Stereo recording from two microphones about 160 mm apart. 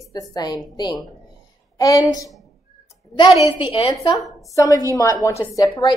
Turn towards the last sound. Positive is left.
turn(degrees=25)  # may be behind; listen again after turning